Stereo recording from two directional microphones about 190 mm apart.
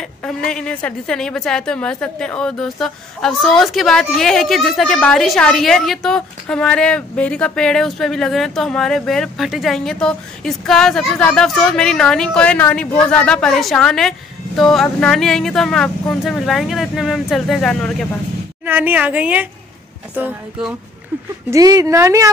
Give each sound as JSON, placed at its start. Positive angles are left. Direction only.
{"t": 0.0, "sound": "a woman's voice", "side_deg": 5}
{"t": 18.7, "sound": "speech", "side_deg": -10}
{"t": 21.5, "sound": "speech", "side_deg": -20}